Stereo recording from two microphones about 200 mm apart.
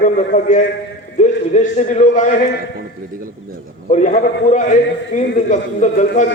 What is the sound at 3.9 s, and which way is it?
A man's voice, 40° left (ahead or behind).